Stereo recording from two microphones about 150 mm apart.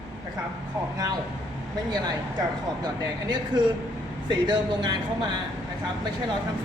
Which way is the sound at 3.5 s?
30° right (ahead or behind).